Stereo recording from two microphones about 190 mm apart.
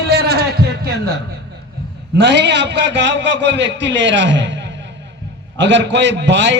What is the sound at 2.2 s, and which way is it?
A man's voice, 65° right (ahead or behind).